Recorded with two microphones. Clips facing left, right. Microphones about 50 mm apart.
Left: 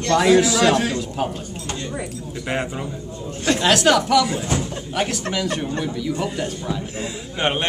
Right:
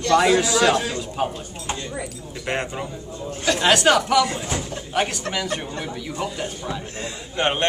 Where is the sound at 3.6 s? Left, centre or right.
Centre.